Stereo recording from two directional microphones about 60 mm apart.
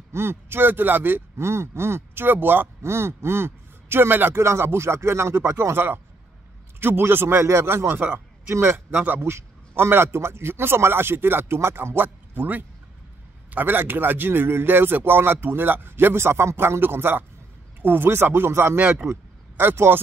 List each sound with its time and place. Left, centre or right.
0.1 s a man's voice: right
2.8 s a man's voice: right
18.8 s speech: right
19.5 s a man's voice: right